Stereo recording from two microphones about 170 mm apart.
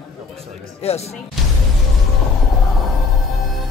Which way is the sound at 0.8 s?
35° left (ahead or behind).